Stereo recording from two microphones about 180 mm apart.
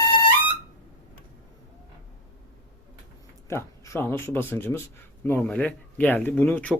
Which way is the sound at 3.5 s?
15° left (ahead or behind).